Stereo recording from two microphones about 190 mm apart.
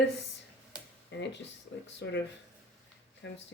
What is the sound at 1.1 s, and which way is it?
Speech, 65° left (ahead or behind).